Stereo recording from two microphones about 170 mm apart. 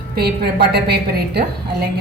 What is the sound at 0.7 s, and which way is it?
A woman's voice, 75° right (ahead or behind).